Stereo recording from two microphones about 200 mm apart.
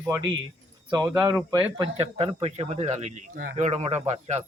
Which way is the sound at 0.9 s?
20° right (ahead or behind).